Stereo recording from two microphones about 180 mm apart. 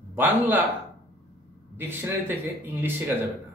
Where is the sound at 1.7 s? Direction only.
10° right (ahead or behind).